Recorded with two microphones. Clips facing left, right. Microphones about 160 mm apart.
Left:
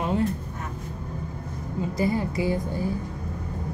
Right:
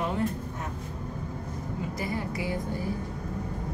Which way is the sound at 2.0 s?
25° left (ahead or behind).